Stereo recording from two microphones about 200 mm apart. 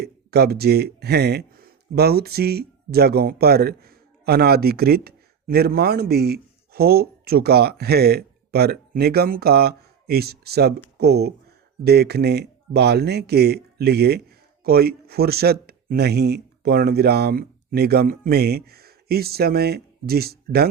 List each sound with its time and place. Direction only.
0.0 s speech: 50° right (ahead or behind)